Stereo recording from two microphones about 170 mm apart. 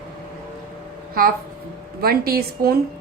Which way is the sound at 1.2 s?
60° right (ahead or behind).